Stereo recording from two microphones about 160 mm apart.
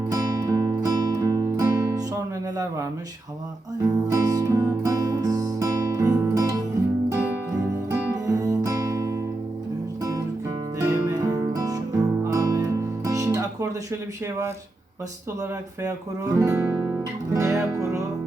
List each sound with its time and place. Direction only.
0.1 s music: 20° right (ahead or behind)
3.8 s music: 20° right (ahead or behind)
7.9 s music: 15° right (ahead or behind)
15.4 s speech: 20° right (ahead or behind)